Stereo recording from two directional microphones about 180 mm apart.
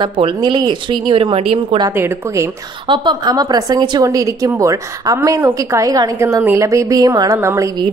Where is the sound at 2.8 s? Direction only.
25° right (ahead or behind).